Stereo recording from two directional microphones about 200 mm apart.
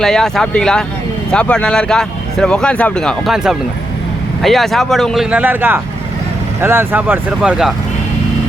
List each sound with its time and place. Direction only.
0.0 s speech: centre (ahead or behind)